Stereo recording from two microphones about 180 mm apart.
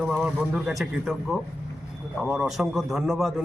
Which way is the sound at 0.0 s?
Centre (ahead or behind).